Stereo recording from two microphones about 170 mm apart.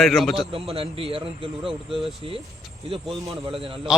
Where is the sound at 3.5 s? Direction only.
30° right (ahead or behind).